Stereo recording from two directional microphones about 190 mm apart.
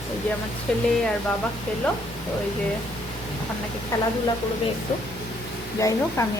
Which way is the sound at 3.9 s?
15° left (ahead or behind).